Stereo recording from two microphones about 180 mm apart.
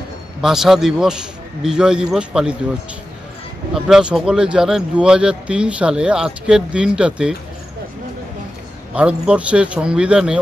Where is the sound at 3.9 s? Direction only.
5° right (ahead or behind).